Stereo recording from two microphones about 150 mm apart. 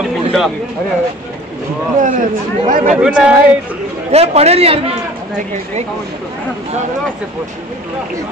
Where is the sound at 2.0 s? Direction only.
60° right (ahead or behind).